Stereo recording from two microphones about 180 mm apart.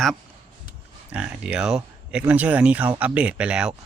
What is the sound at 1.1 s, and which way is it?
Speech, 5° right (ahead or behind).